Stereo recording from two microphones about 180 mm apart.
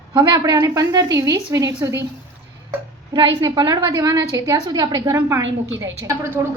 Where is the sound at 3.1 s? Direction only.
25° right (ahead or behind).